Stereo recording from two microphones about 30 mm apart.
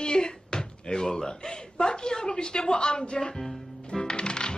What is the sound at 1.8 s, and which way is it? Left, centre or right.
A woman's voice, left.